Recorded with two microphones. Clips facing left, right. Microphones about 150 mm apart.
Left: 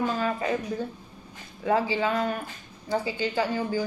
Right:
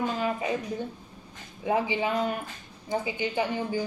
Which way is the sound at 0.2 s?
20° right (ahead or behind).